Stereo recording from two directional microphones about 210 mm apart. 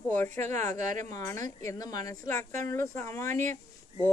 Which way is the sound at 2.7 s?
10° left (ahead or behind).